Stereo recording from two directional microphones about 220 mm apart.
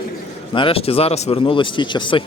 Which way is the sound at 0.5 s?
25° left (ahead or behind).